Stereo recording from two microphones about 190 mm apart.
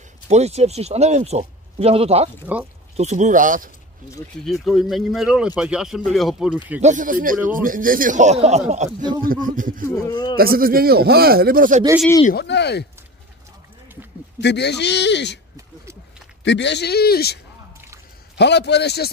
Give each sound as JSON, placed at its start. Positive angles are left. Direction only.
{"t": 0.3, "sound": "a man's voice", "side_deg": -35}
{"t": 4.5, "sound": "speech", "side_deg": 0}
{"t": 6.8, "sound": "a man's voice", "side_deg": -40}
{"t": 9.8, "sound": "speech", "side_deg": 20}
{"t": 10.3, "sound": "a man's voice", "side_deg": -50}
{"t": 12.3, "sound": "a man's voice", "side_deg": 60}
{"t": 14.4, "sound": "a man's voice", "side_deg": 65}
{"t": 15.5, "sound": "a sound", "side_deg": -15}
{"t": 16.4, "sound": "a man's voice", "side_deg": 65}
{"t": 18.4, "sound": "a man's voice", "side_deg": 65}